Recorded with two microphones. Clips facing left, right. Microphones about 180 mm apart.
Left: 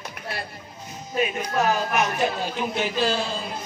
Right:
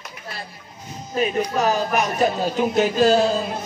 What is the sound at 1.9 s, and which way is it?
Speech, 40° right (ahead or behind).